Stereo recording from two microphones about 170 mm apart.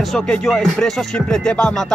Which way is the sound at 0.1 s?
Centre (ahead or behind).